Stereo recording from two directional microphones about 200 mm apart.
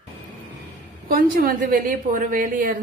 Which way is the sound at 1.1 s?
45° right (ahead or behind).